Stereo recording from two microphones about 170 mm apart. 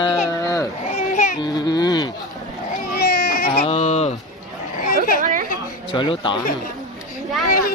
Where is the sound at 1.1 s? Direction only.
45° left (ahead or behind).